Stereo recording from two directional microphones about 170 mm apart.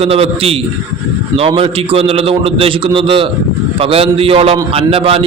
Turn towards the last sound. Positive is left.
turn(degrees=-35)  # may be behind; listen again after turning